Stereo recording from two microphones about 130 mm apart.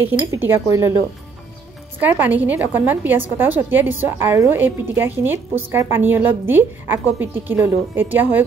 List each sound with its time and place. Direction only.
0.0 s speech: 15° right (ahead or behind)
2.0 s a woman's voice: 15° right (ahead or behind)